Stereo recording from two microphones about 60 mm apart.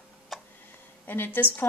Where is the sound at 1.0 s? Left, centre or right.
Left.